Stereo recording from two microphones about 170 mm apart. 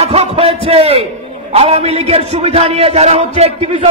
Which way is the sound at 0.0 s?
35° right (ahead or behind).